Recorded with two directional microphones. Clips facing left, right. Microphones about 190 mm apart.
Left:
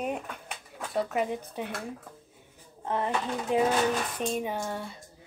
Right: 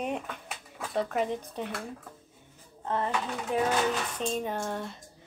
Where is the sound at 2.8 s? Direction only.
15° left (ahead or behind).